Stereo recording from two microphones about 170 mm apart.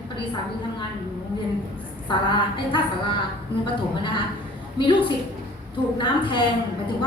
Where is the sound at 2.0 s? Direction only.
30° left (ahead or behind).